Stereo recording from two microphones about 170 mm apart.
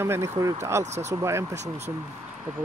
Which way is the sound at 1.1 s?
15° right (ahead or behind).